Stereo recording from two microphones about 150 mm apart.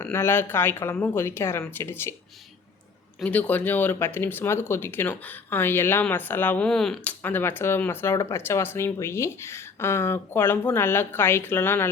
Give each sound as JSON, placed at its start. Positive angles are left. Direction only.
{"t": 0.0, "sound": "speech", "side_deg": 15}
{"t": 3.2, "sound": "speech", "side_deg": 10}
{"t": 7.2, "sound": "speech", "side_deg": 15}